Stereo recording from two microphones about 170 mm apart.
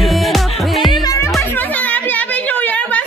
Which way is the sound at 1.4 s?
10° left (ahead or behind).